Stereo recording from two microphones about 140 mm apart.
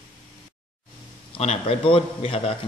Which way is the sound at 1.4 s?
45° left (ahead or behind).